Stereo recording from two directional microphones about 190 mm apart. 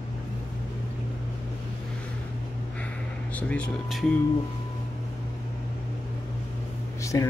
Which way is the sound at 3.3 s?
5° left (ahead or behind).